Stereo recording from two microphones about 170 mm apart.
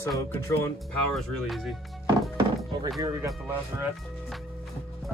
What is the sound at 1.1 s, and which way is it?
Speech, centre (ahead or behind).